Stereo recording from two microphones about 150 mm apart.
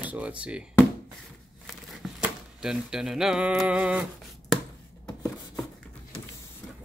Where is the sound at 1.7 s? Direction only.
Centre (ahead or behind).